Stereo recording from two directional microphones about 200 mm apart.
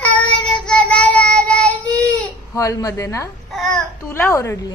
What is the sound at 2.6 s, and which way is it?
Speech, 15° left (ahead or behind).